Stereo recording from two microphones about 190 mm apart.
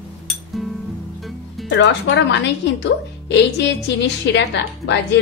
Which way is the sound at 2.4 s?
65° left (ahead or behind).